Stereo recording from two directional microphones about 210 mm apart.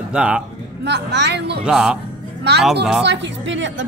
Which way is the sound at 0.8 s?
55° right (ahead or behind).